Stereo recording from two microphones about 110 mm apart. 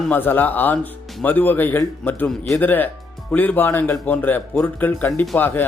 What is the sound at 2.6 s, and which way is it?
Speech, 15° left (ahead or behind).